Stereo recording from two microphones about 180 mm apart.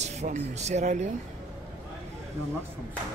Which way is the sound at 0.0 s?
40° right (ahead or behind).